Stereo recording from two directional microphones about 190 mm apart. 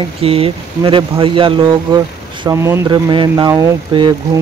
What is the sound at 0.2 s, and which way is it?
Speech, 30° right (ahead or behind).